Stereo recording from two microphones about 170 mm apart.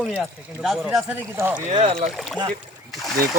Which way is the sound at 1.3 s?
15° right (ahead or behind).